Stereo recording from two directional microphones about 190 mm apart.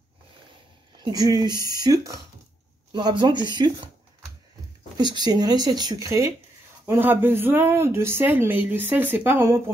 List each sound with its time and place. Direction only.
1.0 s speech: 20° right (ahead or behind)
4.9 s speech: 20° right (ahead or behind)